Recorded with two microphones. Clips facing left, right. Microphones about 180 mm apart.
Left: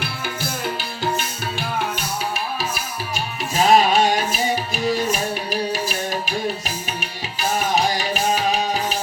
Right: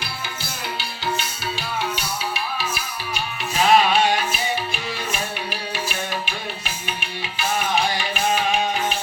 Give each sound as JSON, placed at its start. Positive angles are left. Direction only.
{"t": 0.0, "sound": "music", "side_deg": 50}
{"t": 3.6, "sound": "music", "side_deg": 40}
{"t": 7.3, "sound": "music", "side_deg": 40}